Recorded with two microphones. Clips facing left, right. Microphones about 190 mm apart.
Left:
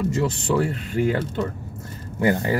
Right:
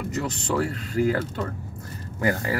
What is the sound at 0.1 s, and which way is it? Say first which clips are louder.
Speech: left 4 dB; 25° left (ahead or behind).